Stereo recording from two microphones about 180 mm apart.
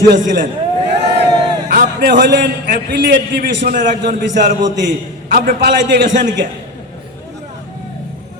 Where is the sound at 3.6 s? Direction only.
45° right (ahead or behind); by 6.1 s 70° right (ahead or behind).